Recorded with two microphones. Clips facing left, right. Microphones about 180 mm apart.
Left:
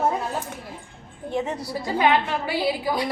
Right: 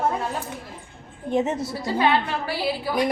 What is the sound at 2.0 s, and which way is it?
Speech, 15° left (ahead or behind).